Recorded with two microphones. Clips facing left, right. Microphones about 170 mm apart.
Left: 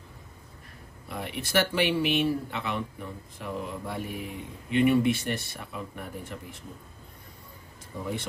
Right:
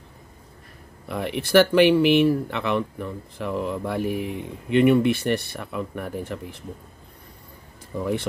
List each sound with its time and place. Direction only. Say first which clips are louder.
1.0 s speech: right 8 dB; 65° right (ahead or behind)
8.0 s speech: right 8 dB; 65° right (ahead or behind)